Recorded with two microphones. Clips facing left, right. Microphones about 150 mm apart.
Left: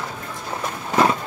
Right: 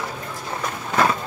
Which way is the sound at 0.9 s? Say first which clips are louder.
Left 2 dB; 20° left (ahead or behind).